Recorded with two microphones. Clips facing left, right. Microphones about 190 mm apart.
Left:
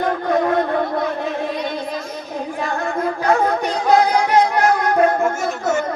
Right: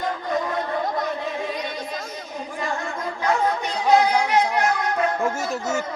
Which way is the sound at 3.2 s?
55° left (ahead or behind).